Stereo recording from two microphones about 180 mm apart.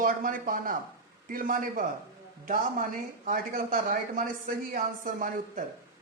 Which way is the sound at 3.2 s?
50° right (ahead or behind).